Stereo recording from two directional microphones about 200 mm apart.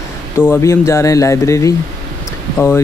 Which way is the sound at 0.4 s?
10° left (ahead or behind).